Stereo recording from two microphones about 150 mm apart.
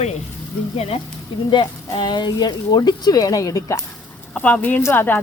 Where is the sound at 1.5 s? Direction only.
30° left (ahead or behind).